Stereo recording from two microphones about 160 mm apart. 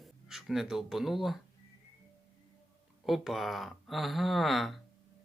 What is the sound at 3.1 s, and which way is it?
Speech, centre (ahead or behind).